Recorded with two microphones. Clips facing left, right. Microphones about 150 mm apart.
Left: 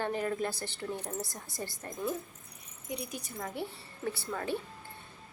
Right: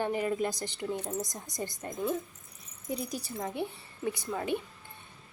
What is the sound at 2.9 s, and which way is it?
Speech, 40° right (ahead or behind).